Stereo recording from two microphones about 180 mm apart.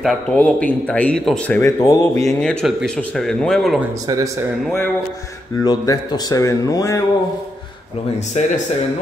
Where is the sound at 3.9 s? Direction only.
20° right (ahead or behind).